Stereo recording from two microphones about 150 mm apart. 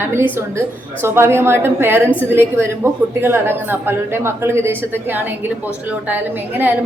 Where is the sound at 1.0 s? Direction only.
15° right (ahead or behind).